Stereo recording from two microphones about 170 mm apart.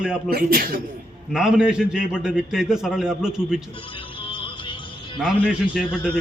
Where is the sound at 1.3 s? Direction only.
5° right (ahead or behind).